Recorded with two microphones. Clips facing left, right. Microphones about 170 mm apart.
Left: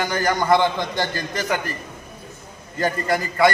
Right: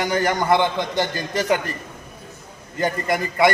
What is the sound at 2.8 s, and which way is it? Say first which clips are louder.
Speech: even; 20° right (ahead or behind).